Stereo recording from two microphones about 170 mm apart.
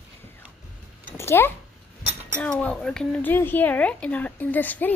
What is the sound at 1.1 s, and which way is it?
A woman's voice, 15° left (ahead or behind).